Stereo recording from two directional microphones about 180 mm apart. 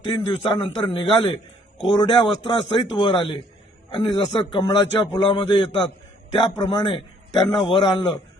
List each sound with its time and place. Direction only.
0.1 s a man's voice: 25° left (ahead or behind)
7.3 s speech: centre (ahead or behind)
7.6 s a man's voice: 25° left (ahead or behind)